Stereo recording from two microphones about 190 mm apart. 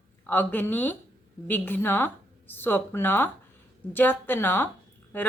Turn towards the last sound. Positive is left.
turn(degrees=10)  # may be behind; listen again after turning